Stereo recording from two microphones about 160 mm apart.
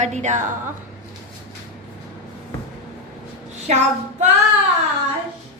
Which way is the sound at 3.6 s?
45° right (ahead or behind).